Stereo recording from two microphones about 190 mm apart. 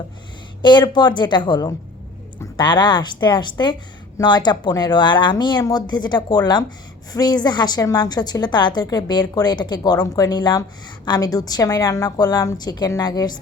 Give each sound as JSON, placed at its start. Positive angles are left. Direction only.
{"t": 0.6, "sound": "a woman's voice", "side_deg": 25}